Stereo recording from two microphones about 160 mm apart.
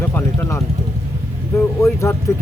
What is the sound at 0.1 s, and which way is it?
Vehicle, 15° left (ahead or behind).